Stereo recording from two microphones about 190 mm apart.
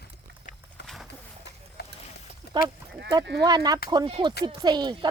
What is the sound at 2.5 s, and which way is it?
Livestock, 60° left (ahead or behind).